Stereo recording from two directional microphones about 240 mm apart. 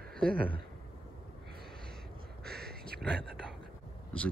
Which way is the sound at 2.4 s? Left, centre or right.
Right.